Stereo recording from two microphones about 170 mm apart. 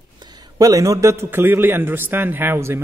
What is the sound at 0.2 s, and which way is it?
A man's voice, 25° right (ahead or behind).